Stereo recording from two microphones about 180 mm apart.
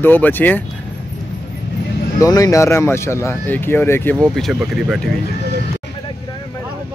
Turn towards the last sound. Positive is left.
turn(degrees=-5)  # may be behind; listen again after turning